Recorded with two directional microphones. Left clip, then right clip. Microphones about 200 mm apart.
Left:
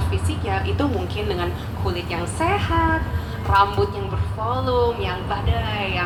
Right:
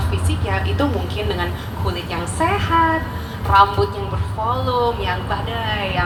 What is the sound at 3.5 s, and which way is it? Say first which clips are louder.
A woman's voice: right 4 dB; 20° left (ahead or behind).